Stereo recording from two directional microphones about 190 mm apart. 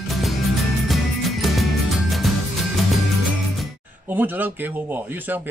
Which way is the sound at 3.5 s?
5° right (ahead or behind).